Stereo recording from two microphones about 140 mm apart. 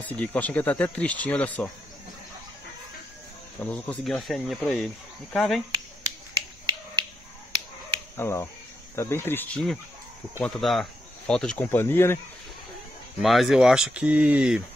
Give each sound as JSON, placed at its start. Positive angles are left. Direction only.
{"t": 0.0, "sound": "speech", "side_deg": 10}
{"t": 3.5, "sound": "speech", "side_deg": 10}
{"t": 8.2, "sound": "speech", "side_deg": 20}
{"t": 13.2, "sound": "speech", "side_deg": 0}